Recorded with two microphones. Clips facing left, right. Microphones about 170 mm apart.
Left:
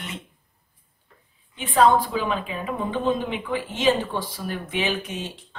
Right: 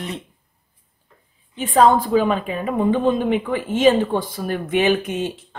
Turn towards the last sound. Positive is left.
turn(degrees=-55)  # may be behind; listen again after turning